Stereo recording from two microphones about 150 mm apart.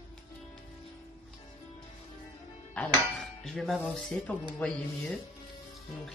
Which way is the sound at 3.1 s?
Centre (ahead or behind).